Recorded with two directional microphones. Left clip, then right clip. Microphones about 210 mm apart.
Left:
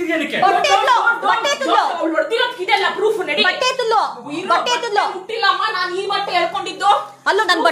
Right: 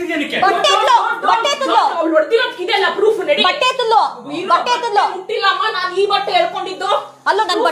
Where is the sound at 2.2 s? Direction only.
25° left (ahead or behind).